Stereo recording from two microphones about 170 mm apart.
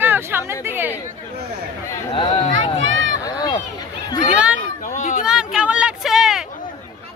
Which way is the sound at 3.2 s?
25° left (ahead or behind).